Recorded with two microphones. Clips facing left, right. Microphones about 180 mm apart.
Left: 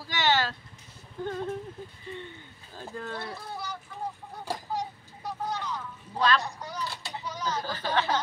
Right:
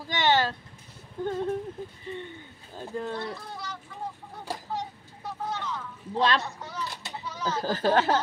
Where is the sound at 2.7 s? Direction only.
20° right (ahead or behind).